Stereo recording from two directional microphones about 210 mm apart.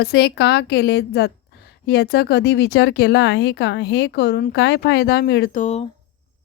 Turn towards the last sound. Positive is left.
turn(degrees=30)  # may be behind; listen again after turning